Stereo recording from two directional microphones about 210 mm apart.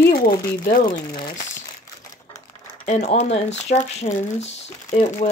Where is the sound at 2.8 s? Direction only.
35° left (ahead or behind).